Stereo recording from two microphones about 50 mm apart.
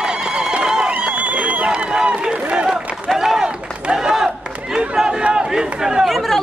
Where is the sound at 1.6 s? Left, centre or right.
Centre.